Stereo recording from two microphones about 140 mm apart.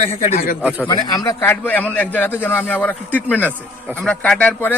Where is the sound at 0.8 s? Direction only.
25° left (ahead or behind).